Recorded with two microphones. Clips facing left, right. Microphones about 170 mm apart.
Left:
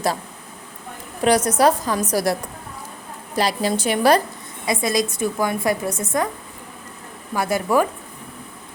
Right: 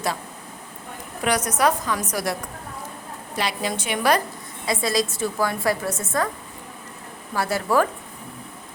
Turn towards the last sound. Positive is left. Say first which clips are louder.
# left 2 dB
turn(degrees=15)  # may be behind; listen again after turning